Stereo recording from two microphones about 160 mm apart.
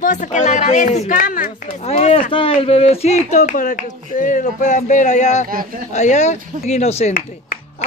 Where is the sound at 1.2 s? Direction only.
60° left (ahead or behind).